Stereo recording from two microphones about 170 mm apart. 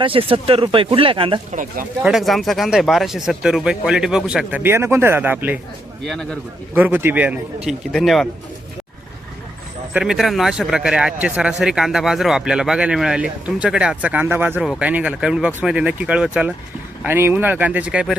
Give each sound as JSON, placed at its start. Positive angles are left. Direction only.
{"t": 0.0, "sound": "speech", "side_deg": -35}
{"t": 1.5, "sound": "speech", "side_deg": -55}
{"t": 2.0, "sound": "speech", "side_deg": 0}
{"t": 6.7, "sound": "speech", "side_deg": -10}
{"t": 9.9, "sound": "speech", "side_deg": -5}